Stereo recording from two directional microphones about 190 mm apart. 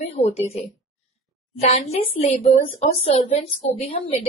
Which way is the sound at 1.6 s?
35° left (ahead or behind).